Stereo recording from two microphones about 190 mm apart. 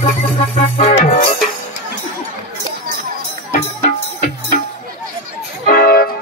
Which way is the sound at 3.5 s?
45° left (ahead or behind).